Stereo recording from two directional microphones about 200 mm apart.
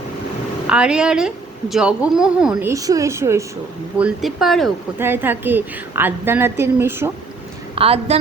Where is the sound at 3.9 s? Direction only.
5° right (ahead or behind).